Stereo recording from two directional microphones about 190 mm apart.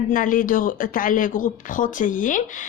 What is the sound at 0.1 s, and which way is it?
Speech, 45° left (ahead or behind).